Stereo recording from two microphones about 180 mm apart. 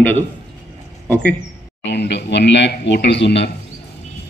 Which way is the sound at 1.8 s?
70° left (ahead or behind).